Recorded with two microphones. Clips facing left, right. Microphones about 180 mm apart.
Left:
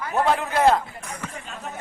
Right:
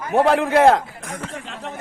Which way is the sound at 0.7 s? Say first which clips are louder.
Right 3 dB; 90° right.